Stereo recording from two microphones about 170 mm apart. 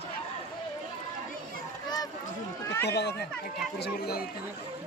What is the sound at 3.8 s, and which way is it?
Speech, 65° left (ahead or behind).